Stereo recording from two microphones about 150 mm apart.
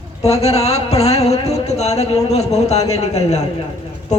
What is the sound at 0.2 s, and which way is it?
Speech, 45° left (ahead or behind).